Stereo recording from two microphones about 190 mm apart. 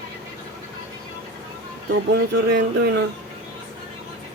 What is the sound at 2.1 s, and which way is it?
Speech, 65° right (ahead or behind).